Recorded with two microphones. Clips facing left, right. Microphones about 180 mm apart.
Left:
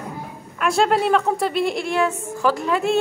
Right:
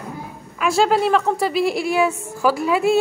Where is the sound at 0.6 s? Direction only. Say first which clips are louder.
Right 1 dB; centre (ahead or behind).